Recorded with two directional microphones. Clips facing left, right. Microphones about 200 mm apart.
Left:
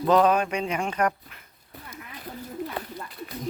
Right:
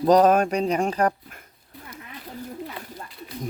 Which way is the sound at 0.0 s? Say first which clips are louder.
Right 3 dB; 40° right (ahead or behind).